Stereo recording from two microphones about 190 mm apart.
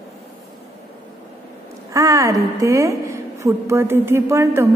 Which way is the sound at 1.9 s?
15° right (ahead or behind).